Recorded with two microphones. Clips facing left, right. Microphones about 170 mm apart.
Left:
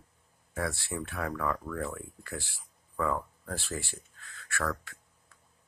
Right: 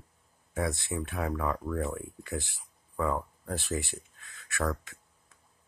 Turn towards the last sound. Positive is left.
turn(degrees=-20)  # may be behind; listen again after turning